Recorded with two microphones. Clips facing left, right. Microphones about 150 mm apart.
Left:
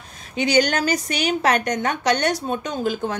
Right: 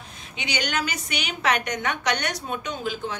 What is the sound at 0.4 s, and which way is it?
A woman's voice, 40° left (ahead or behind).